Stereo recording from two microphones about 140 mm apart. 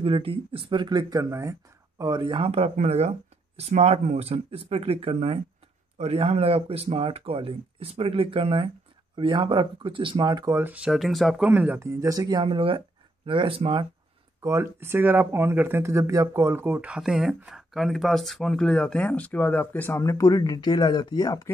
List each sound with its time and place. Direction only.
0.0 s speech: 40° right (ahead or behind)
10.6 s speech: 10° right (ahead or behind); by 13.8 s 40° right (ahead or behind)
14.4 s speech: 20° right (ahead or behind); by 21.5 s 30° left (ahead or behind)